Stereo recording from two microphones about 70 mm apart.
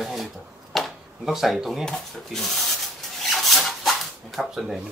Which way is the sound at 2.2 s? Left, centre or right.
Centre.